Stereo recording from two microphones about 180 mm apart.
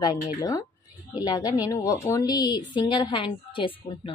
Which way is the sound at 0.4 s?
20° left (ahead or behind).